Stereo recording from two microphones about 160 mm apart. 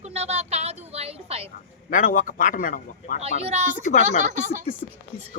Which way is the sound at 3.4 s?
40° right (ahead or behind).